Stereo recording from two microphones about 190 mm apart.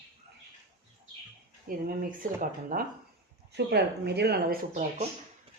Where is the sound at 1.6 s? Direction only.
45° right (ahead or behind).